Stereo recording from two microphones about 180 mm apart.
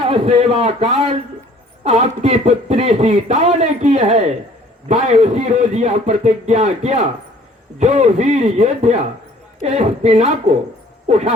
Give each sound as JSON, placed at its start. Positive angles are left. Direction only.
{"t": 0.1, "sound": "speech", "side_deg": -30}